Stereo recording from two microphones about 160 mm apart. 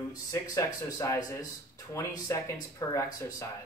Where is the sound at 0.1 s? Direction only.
20° left (ahead or behind).